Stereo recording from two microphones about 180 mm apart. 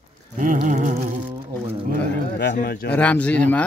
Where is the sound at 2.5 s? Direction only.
55° left (ahead or behind).